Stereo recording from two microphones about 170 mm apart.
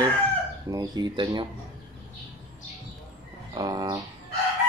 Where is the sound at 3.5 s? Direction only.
25° right (ahead or behind).